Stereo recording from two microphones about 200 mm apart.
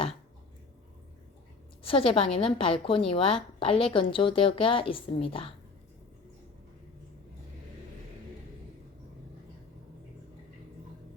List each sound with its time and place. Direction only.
1.8 s a woman's voice: 30° left (ahead or behind)